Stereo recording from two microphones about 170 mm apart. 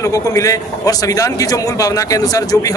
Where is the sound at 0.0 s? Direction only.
20° left (ahead or behind).